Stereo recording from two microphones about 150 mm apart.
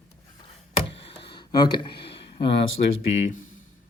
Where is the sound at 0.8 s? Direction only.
35° left (ahead or behind).